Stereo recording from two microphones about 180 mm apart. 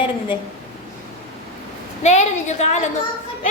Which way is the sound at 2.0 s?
40° left (ahead or behind).